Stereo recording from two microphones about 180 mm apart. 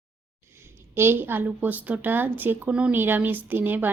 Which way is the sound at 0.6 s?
15° right (ahead or behind).